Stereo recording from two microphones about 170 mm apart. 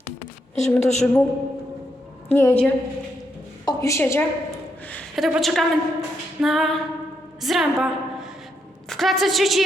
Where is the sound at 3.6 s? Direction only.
20° left (ahead or behind).